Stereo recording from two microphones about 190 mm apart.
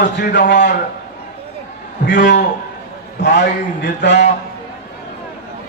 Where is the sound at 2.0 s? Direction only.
65° left (ahead or behind).